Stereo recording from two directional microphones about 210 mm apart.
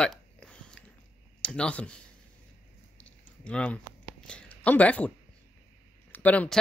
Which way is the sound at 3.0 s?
5° left (ahead or behind).